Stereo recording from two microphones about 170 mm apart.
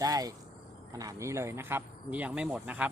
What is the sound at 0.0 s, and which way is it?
Speech, 20° right (ahead or behind).